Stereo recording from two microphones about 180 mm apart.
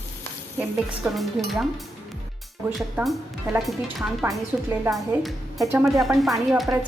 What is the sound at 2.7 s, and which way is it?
Speech, centre (ahead or behind).